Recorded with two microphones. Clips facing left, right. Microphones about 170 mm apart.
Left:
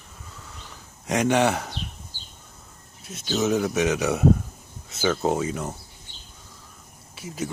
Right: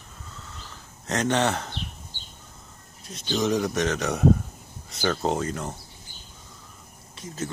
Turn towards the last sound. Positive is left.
turn(degrees=10)  # may be behind; listen again after turning